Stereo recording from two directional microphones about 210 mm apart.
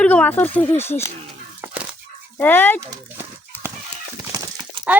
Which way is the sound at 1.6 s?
5° right (ahead or behind).